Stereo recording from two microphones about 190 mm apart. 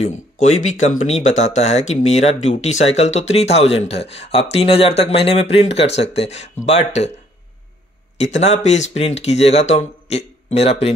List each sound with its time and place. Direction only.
0.0 s speech: 35° left (ahead or behind)
8.2 s speech: 35° left (ahead or behind)